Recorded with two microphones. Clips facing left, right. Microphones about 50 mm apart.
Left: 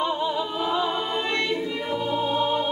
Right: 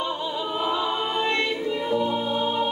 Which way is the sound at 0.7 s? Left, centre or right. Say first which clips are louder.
Even; centre.